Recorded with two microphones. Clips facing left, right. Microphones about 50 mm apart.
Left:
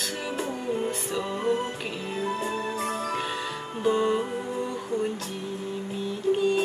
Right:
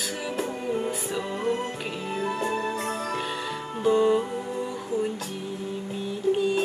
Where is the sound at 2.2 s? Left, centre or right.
Right.